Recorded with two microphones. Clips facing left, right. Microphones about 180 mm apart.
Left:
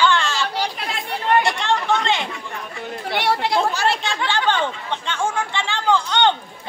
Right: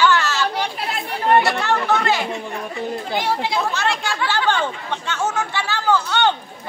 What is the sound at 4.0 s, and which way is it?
Speech, 20° left (ahead or behind).